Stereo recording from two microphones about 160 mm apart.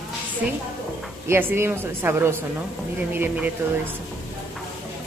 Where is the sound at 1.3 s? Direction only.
15° right (ahead or behind).